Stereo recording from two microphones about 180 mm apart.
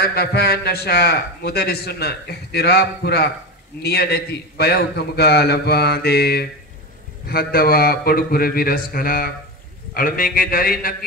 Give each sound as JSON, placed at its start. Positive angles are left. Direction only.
{"t": 0.0, "sound": "a man's voice", "side_deg": 60}